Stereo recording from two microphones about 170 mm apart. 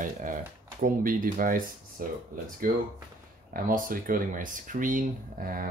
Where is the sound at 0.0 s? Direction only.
50° right (ahead or behind).